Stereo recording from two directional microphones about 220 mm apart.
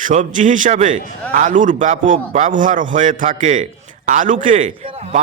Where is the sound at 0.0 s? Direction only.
35° right (ahead or behind).